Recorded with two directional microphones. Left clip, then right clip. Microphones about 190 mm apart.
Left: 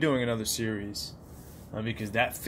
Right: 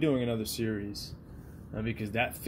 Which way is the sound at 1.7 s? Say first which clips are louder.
Left 2 dB; 50° left (ahead or behind).